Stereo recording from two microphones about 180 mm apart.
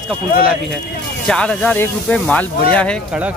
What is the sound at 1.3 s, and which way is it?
Speech, 5° left (ahead or behind).